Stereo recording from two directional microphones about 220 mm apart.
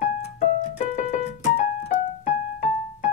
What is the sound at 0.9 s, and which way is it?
Piano, 30° left (ahead or behind).